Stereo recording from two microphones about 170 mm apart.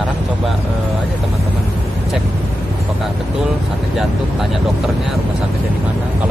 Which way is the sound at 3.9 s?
Centre (ahead or behind).